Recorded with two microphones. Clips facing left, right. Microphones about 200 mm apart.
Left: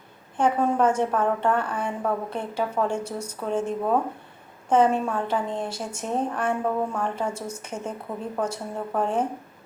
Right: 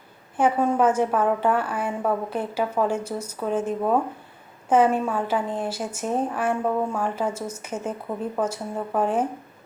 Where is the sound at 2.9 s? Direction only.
30° left (ahead or behind).